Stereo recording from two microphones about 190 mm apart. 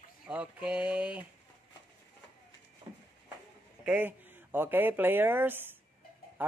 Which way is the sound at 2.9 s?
25° right (ahead or behind).